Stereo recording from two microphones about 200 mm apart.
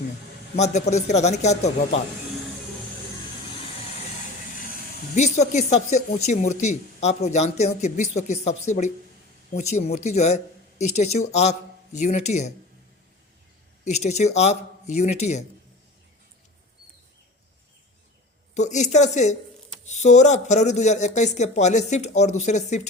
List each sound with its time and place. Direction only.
0.5 s speech: 35° left (ahead or behind)
5.1 s speech: 35° left (ahead or behind)
13.8 s speech: 35° left (ahead or behind)
18.5 s speech: 35° left (ahead or behind)